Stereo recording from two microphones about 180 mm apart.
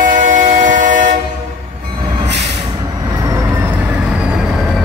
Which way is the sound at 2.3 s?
35° right (ahead or behind).